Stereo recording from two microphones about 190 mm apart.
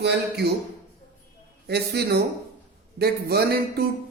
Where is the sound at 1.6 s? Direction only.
60° right (ahead or behind).